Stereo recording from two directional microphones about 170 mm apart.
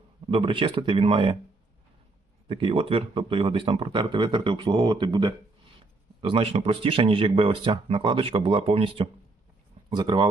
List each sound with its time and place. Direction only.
0.3 s speech: 30° right (ahead or behind)
2.5 s speech: 30° right (ahead or behind)